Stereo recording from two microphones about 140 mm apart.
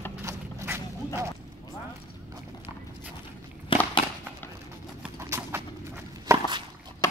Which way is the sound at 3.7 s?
40° left (ahead or behind).